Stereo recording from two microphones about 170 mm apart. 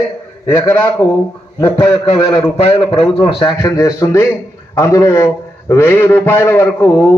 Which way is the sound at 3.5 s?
20° left (ahead or behind).